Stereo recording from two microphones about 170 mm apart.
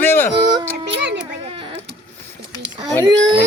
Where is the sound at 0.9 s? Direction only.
90° right.